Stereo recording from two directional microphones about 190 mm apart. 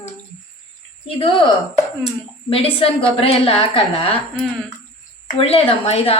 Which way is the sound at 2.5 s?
30° left (ahead or behind).